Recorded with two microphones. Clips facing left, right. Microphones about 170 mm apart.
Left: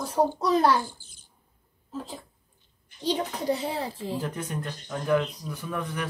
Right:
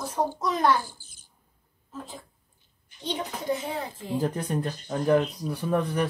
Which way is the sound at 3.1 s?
35° left (ahead or behind).